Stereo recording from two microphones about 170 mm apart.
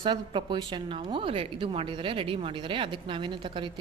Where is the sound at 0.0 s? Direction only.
30° right (ahead or behind).